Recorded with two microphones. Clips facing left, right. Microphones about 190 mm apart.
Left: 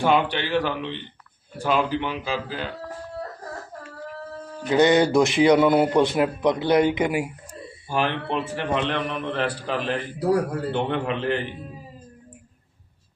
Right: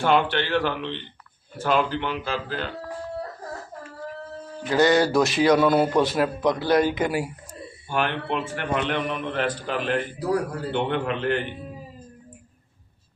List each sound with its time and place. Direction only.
0.0 s speech: 10° left (ahead or behind)
4.7 s a man's voice: 20° left (ahead or behind)
7.9 s a man's voice: 35° left (ahead or behind)
8.9 s a man's voice: centre (ahead or behind)
10.2 s a man's voice: 35° left (ahead or behind)